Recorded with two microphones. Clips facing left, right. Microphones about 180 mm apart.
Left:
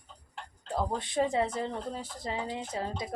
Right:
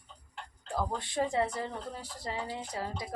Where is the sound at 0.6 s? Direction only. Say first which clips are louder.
Left 2 dB; 20° left (ahead or behind).